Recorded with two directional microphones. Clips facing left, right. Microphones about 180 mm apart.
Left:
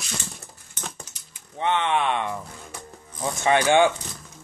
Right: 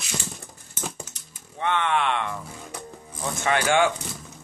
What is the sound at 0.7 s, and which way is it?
Typing, 10° right (ahead or behind).